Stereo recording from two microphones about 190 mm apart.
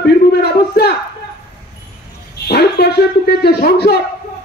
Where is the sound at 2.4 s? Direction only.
55° left (ahead or behind).